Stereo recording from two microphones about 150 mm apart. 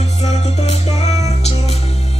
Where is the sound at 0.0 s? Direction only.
45° left (ahead or behind).